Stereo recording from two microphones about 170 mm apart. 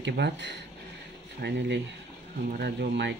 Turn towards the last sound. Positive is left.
turn(degrees=-80)